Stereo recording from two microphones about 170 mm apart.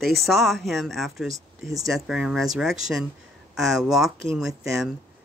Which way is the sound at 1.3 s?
20° right (ahead or behind).